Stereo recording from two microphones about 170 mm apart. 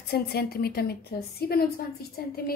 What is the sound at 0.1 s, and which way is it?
A woman's voice, 65° left (ahead or behind).